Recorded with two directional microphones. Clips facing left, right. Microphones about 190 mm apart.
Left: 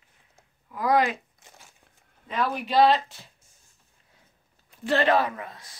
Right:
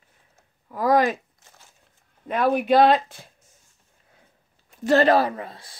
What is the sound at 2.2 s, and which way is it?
Speech, 55° right (ahead or behind).